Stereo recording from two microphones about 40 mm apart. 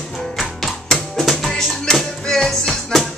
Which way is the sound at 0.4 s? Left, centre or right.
Centre.